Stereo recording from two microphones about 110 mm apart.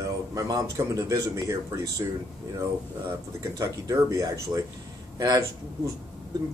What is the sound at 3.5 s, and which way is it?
Speech, 30° right (ahead or behind).